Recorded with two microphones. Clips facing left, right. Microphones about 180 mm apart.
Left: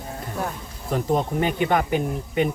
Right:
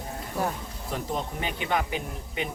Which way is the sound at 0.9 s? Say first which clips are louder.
Left 9 dB; 50° left (ahead or behind).